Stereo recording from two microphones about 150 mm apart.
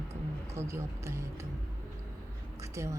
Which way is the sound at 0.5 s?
20° right (ahead or behind).